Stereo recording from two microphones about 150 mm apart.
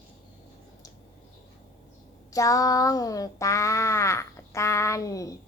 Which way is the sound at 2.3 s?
20° left (ahead or behind).